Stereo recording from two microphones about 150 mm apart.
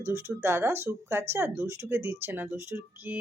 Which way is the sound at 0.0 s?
15° right (ahead or behind).